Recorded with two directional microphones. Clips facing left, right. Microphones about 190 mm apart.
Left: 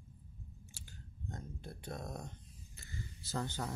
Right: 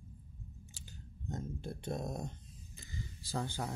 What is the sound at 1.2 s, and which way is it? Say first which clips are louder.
Speech: right 6 dB; 25° right (ahead or behind).